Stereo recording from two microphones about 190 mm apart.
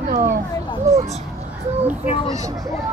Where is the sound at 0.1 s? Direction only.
50° right (ahead or behind).